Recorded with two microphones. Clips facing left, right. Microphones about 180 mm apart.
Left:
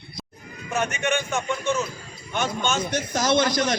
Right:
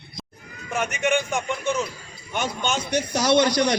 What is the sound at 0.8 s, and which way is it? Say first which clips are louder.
A man's voice: right 2 dB; 15° right (ahead or behind).